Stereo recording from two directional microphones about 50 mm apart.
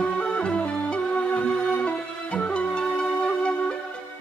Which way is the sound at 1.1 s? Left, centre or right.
Left.